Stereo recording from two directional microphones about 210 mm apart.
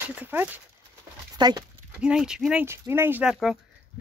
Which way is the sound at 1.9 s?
5° right (ahead or behind).